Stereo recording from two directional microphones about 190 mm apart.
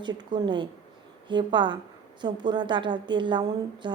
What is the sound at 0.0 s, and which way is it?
A woman's voice, 25° right (ahead or behind).